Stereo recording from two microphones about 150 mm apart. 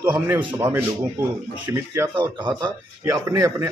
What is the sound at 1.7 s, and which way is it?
Speech, 20° right (ahead or behind).